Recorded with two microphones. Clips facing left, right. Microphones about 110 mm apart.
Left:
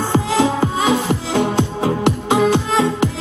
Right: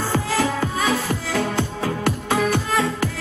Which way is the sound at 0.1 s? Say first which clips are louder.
Left 6 dB; 20° left (ahead or behind).